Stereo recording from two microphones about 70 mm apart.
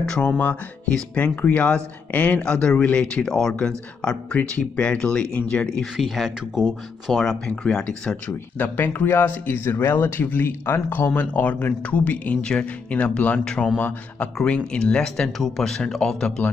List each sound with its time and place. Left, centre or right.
0.0 s speech: centre
0.3 s speech: left
5.9 s speech: centre
7.4 s speech: centre
8.3 s speech: left; by 16.4 s centre